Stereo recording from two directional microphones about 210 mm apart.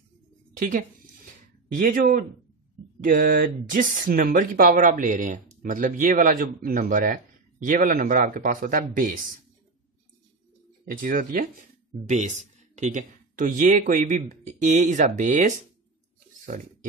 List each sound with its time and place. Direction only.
0.6 s speech: 40° right (ahead or behind)
10.9 s speech: 40° right (ahead or behind)